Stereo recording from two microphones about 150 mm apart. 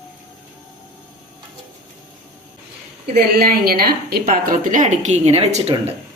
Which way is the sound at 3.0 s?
90° right.